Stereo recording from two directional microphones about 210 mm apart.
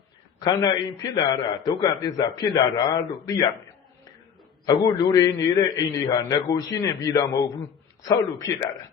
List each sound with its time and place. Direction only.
0.3 s a man's voice: 20° left (ahead or behind)
4.6 s a man's voice: 20° left (ahead or behind)